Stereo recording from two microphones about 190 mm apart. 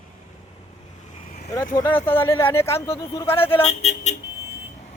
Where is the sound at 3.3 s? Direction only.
30° left (ahead or behind).